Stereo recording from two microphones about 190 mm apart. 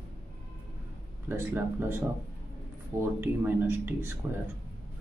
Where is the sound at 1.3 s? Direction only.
10° right (ahead or behind).